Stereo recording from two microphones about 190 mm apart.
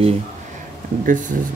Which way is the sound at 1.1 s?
45° right (ahead or behind).